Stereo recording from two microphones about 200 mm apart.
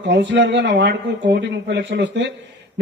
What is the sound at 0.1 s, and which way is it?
A man's voice, 60° right (ahead or behind).